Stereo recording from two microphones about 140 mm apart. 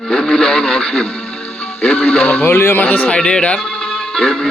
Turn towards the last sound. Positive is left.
turn(degrees=5)  # may be behind; listen again after turning